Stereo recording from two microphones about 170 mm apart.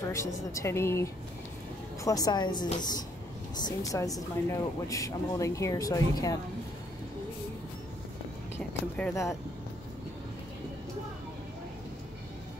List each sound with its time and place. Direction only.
0.1 s a woman's voice: 20° left (ahead or behind)
8.5 s a woman's voice: 10° left (ahead or behind)